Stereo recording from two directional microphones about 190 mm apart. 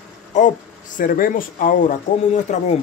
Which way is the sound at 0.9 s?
45° left (ahead or behind).